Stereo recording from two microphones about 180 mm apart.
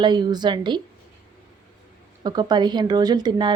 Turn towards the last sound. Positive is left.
turn(degrees=-25)  # may be behind; listen again after turning